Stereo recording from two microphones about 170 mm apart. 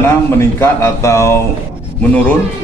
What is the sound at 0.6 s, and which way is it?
Speech, 15° left (ahead or behind).